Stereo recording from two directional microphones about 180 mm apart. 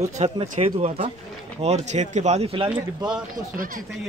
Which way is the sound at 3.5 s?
50° right (ahead or behind).